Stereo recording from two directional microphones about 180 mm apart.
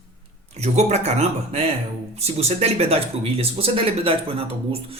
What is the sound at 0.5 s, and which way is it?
Speech, 35° right (ahead or behind).